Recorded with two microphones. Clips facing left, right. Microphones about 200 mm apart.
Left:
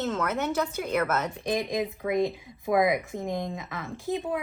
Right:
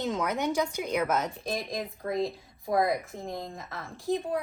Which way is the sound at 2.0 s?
90° left.